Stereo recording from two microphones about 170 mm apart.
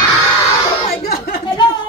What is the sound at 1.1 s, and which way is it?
Speech, 60° left (ahead or behind).